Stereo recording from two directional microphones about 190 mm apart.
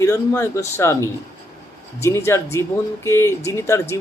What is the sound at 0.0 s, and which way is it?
Speech, 15° left (ahead or behind).